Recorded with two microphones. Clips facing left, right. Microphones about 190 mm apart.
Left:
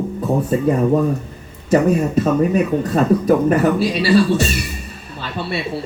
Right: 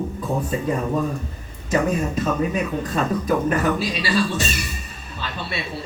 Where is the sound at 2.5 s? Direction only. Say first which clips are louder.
Left 7 dB; 65° left (ahead or behind).